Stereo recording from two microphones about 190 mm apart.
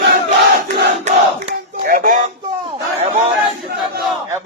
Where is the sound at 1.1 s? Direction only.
40° right (ahead or behind).